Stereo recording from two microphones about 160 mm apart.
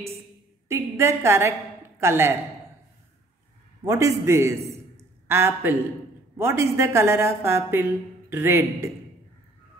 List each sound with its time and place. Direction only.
0.7 s a woman's voice: 15° right (ahead or behind)
3.8 s a man's voice: 20° right (ahead or behind)